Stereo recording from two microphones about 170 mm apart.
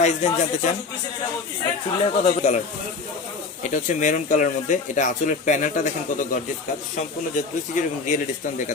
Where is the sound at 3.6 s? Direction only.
45° left (ahead or behind).